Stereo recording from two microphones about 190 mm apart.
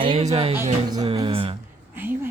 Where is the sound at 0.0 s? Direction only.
30° right (ahead or behind).